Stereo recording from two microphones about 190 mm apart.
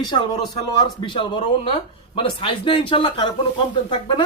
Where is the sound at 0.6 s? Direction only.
25° left (ahead or behind).